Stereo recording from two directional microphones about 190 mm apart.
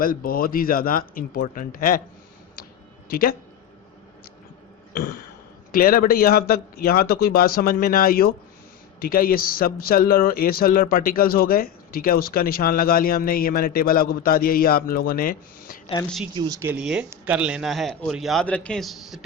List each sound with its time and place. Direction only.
0.0 s a man's voice: 50° left (ahead or behind)
3.1 s a man's voice: 50° left (ahead or behind)
4.9 s a man's voice: 50° left (ahead or behind)
16.3 s speech: 20° right (ahead or behind)
16.7 s a man's voice: 5° right (ahead or behind)